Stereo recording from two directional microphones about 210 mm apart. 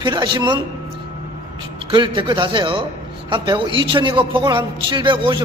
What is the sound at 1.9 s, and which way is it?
A man's voice, 20° right (ahead or behind).